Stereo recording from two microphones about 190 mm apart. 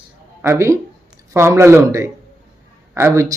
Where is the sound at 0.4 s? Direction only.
15° right (ahead or behind).